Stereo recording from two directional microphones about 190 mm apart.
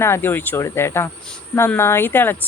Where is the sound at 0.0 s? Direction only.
10° left (ahead or behind).